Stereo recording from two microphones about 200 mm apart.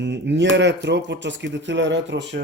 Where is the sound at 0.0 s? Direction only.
60° right (ahead or behind).